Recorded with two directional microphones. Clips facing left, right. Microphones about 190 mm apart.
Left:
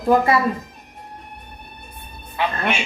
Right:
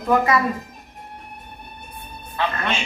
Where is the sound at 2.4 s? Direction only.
15° left (ahead or behind).